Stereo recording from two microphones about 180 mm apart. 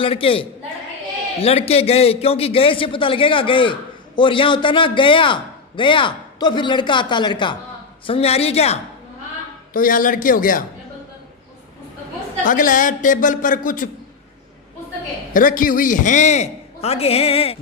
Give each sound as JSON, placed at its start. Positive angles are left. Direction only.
{"t": 0.0, "sound": "a man's voice", "side_deg": 30}
{"t": 9.7, "sound": "speech", "side_deg": 50}
{"t": 12.5, "sound": "speech", "side_deg": 50}
{"t": 15.3, "sound": "a man's voice", "side_deg": 50}